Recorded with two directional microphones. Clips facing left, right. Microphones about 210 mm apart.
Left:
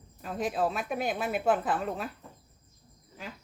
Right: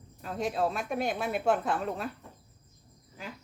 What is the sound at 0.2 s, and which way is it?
A woman's voice, centre (ahead or behind).